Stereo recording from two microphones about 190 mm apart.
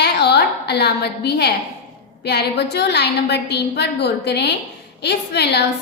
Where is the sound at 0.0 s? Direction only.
60° left (ahead or behind).